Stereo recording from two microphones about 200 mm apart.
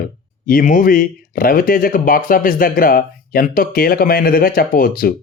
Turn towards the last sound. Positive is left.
turn(degrees=45)  # may be behind; listen again after turning